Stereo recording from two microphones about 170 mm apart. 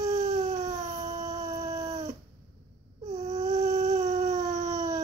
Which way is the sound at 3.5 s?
40° right (ahead or behind).